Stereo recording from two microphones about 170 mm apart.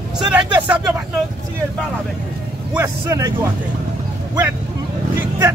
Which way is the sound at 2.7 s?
15° right (ahead or behind).